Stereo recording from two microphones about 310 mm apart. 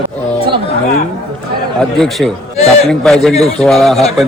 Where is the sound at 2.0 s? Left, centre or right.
Centre.